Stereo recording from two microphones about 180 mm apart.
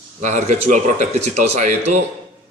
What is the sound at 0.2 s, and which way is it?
Speech, 40° right (ahead or behind).